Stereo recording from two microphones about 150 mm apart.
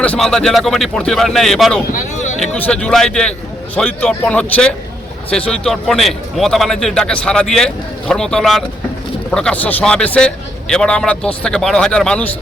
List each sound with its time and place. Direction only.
0.0 s a man's voice: 5° left (ahead or behind)
1.9 s a sound: 55° left (ahead or behind)
2.4 s a man's voice: 5° left (ahead or behind)